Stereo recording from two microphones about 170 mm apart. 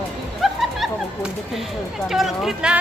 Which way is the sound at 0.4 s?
Centre (ahead or behind).